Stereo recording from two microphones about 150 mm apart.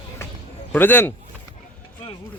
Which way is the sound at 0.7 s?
15° left (ahead or behind).